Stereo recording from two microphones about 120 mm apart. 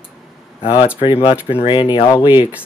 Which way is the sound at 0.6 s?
45° left (ahead or behind).